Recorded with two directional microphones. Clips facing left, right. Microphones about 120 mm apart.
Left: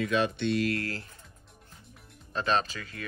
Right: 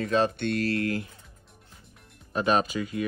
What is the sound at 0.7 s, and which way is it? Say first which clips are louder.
Speech: right 5 dB; 20° right (ahead or behind).